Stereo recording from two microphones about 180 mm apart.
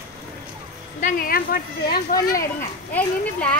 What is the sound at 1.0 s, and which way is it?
Speech, 50° left (ahead or behind).